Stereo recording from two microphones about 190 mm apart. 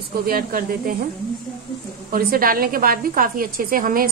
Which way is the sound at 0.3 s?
50° right (ahead or behind).